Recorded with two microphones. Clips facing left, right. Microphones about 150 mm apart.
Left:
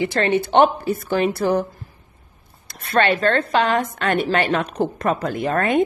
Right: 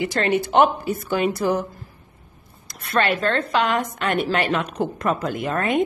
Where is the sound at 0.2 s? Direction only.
30° left (ahead or behind).